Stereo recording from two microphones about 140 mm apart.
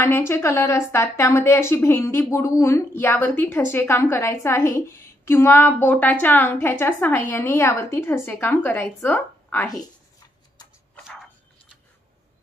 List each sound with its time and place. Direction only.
0.0 s a woman's voice: 20° left (ahead or behind)